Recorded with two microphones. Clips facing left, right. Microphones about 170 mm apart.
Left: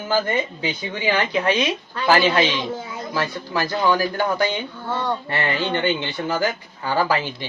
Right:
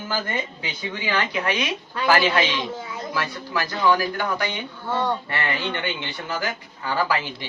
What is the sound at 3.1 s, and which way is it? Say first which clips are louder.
A man's voice: left 3 dB; 30° left (ahead or behind).